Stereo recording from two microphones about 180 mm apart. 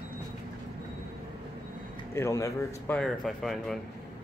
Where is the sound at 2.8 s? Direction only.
5° left (ahead or behind).